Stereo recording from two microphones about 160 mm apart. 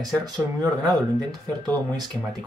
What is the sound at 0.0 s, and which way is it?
Speech, 25° right (ahead or behind).